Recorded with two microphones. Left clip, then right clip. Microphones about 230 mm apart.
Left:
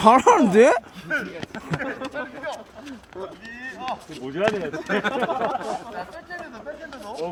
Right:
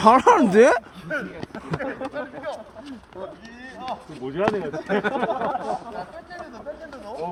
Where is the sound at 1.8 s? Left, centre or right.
Centre.